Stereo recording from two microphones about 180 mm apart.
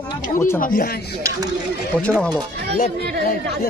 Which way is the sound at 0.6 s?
50° left (ahead or behind).